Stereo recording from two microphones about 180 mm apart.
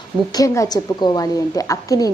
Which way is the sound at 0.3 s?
20° left (ahead or behind).